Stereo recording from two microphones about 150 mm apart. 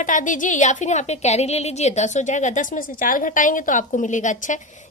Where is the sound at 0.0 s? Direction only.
60° left (ahead or behind).